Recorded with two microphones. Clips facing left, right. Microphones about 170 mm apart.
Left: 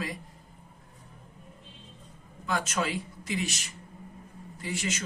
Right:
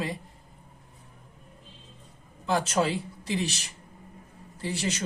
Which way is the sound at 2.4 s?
30° right (ahead or behind).